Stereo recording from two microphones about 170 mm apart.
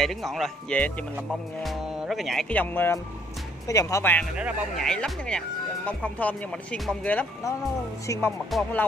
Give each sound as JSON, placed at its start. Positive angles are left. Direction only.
{"t": 0.0, "sound": "speech", "side_deg": 0}
{"t": 4.4, "sound": "speech", "side_deg": -5}
{"t": 4.8, "sound": "speech", "side_deg": 5}